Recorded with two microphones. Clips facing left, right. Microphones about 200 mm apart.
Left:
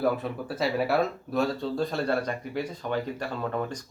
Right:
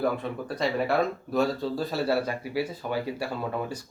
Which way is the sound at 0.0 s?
5° left (ahead or behind).